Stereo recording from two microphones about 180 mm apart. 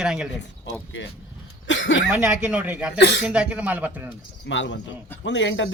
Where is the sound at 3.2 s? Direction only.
5° right (ahead or behind).